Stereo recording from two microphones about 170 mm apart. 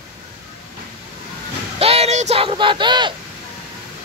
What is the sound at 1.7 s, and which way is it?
Speech, 35° right (ahead or behind).